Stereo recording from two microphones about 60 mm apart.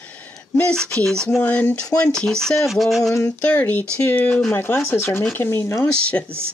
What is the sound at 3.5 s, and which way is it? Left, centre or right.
Speech, left.